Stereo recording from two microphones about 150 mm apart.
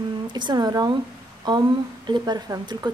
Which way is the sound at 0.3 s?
30° right (ahead or behind).